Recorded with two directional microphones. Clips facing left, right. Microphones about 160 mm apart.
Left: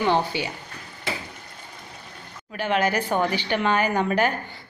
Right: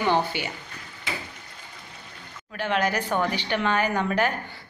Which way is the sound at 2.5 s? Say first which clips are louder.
Left 2 dB; 10° left (ahead or behind).